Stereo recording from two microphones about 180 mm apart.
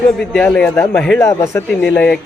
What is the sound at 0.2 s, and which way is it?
Speech, 5° left (ahead or behind).